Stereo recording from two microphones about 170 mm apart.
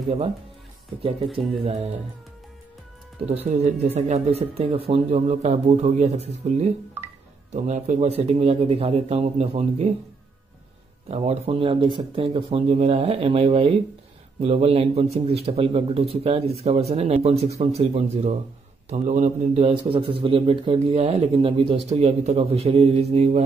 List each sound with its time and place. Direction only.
1.0 s a man's voice: 35° right (ahead or behind)
3.3 s a man's voice: 40° right (ahead or behind)
11.1 s a man's voice: 35° right (ahead or behind)